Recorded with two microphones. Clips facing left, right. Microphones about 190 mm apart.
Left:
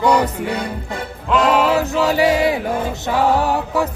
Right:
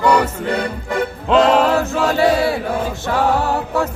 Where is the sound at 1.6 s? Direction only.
10° left (ahead or behind).